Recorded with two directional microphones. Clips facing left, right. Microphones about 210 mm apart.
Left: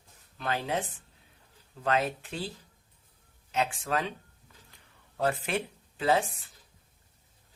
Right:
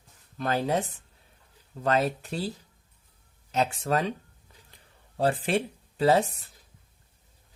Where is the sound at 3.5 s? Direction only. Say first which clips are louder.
Right 4 dB; 40° right (ahead or behind).